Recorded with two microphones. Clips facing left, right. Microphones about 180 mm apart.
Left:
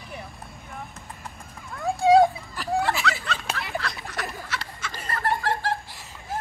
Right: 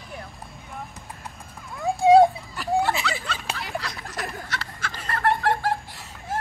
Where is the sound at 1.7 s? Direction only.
15° right (ahead or behind).